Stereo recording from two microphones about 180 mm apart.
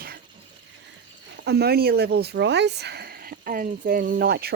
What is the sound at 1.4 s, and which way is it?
Speech, 60° right (ahead or behind).